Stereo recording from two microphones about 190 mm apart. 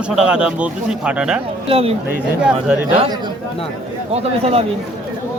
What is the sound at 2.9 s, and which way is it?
A man's voice, 30° right (ahead or behind).